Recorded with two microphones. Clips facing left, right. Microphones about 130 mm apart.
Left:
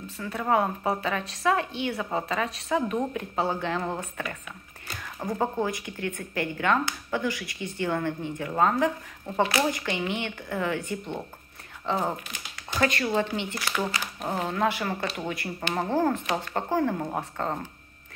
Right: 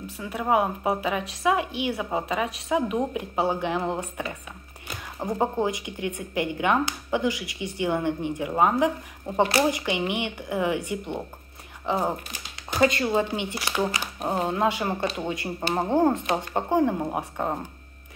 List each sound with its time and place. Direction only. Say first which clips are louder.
0.2 s a woman's voice: right 1 dB; 15° right (ahead or behind)